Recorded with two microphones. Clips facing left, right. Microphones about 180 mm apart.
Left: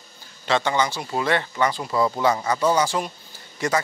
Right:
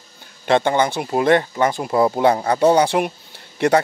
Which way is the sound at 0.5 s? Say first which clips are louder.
Right 5 dB; 55° right (ahead or behind).